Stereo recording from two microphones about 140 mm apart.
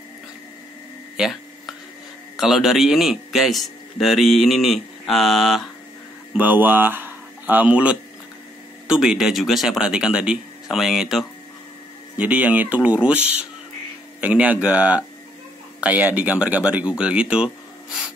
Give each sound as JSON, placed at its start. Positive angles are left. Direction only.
{"t": 1.1, "sound": "a sound", "side_deg": 0}
{"t": 2.3, "sound": "a man's voice", "side_deg": 0}
{"t": 6.3, "sound": "a man's voice", "side_deg": -10}
{"t": 14.2, "sound": "speech", "side_deg": -10}